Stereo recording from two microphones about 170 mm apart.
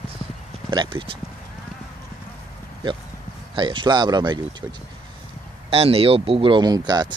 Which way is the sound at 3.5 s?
30° right (ahead or behind).